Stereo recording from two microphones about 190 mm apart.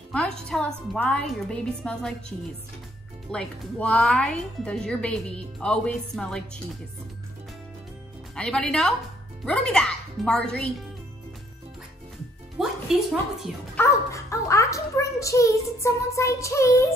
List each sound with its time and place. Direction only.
0.1 s speech: 5° left (ahead or behind)
8.4 s speech: 5° left (ahead or behind)
12.5 s a woman's voice: centre (ahead or behind)
13.7 s a child's voice: 15° left (ahead or behind)